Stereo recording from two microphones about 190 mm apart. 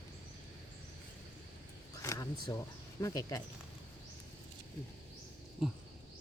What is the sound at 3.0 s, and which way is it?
Speech, 20° left (ahead or behind).